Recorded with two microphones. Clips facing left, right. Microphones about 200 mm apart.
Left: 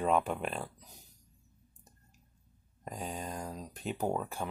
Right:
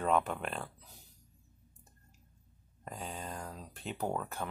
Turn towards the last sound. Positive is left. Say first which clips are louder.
# left 2 dB
turn(degrees=5)  # may be behind; listen again after turning